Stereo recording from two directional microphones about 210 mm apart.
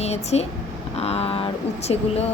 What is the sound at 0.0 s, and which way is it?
Speech, 30° left (ahead or behind).